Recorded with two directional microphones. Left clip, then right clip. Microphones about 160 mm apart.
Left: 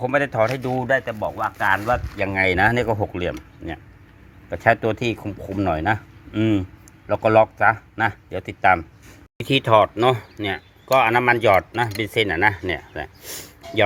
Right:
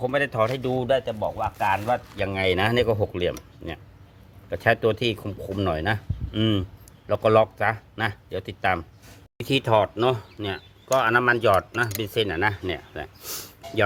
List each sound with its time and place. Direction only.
0.0 s speech: centre (ahead or behind)
1.2 s speech: 40° left (ahead or behind)
2.1 s speech: 10° left (ahead or behind); by 3.3 s 10° right (ahead or behind)
4.4 s speech: 15° right (ahead or behind)